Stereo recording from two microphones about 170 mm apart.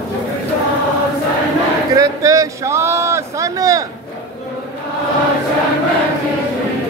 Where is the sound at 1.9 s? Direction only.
20° right (ahead or behind).